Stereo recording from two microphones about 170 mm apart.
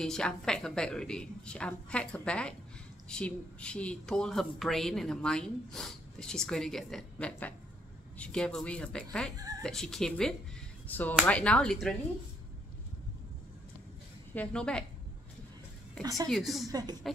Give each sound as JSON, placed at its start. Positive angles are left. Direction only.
{"t": 0.0, "sound": "speech", "side_deg": 5}
{"t": 14.3, "sound": "speech", "side_deg": 5}
{"t": 16.0, "sound": "a woman's voice", "side_deg": -20}
{"t": 16.3, "sound": "speech", "side_deg": 0}